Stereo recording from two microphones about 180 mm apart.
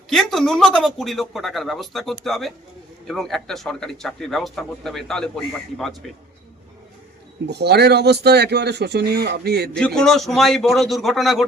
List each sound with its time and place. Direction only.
0.1 s speech: centre (ahead or behind)
7.4 s speech: 65° right (ahead or behind)
9.7 s speech: 5° left (ahead or behind)